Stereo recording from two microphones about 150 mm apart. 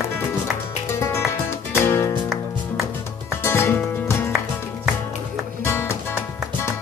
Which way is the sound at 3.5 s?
15° left (ahead or behind).